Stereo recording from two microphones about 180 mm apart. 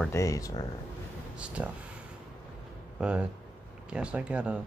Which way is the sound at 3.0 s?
5° right (ahead or behind).